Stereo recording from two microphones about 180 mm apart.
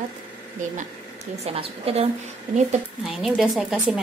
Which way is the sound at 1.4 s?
35° right (ahead or behind).